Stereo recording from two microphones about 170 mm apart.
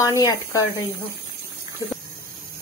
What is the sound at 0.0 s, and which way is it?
Speech, 20° left (ahead or behind).